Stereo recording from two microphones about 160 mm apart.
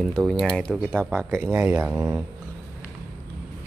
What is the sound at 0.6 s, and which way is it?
Speech, 5° left (ahead or behind).